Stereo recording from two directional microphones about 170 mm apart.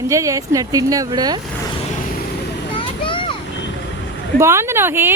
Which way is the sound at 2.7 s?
30° left (ahead or behind).